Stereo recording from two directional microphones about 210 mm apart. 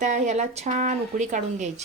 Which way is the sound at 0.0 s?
35° right (ahead or behind).